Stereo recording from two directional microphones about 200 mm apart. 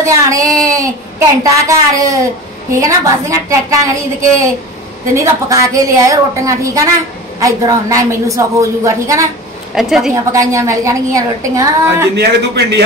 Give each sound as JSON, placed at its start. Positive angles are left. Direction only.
{"t": 0.0, "sound": "a woman's voice", "side_deg": -15}
{"t": 9.8, "sound": "a woman's voice", "side_deg": 0}
{"t": 10.3, "sound": "a woman's voice", "side_deg": -15}
{"t": 12.2, "sound": "a man's voice", "side_deg": -55}